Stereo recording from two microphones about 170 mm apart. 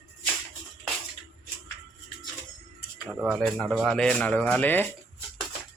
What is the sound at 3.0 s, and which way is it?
Speech, 5° right (ahead or behind).